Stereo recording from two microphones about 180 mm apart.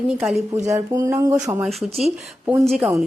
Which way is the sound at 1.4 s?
Centre (ahead or behind).